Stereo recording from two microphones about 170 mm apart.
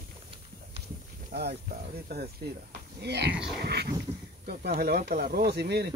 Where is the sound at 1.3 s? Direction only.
65° right (ahead or behind).